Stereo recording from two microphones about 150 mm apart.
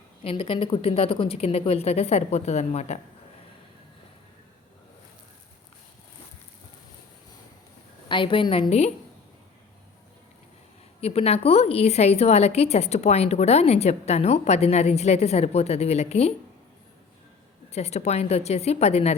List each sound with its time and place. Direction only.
0.2 s a woman's voice: 35° left (ahead or behind)
8.0 s a woman's voice: 35° left (ahead or behind)
11.0 s a woman's voice: 40° left (ahead or behind)
17.7 s a woman's voice: 45° left (ahead or behind)